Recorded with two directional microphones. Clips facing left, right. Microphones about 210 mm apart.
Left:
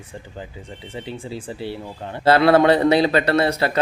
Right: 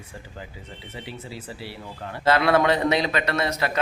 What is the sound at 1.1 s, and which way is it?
A man's voice, 25° left (ahead or behind).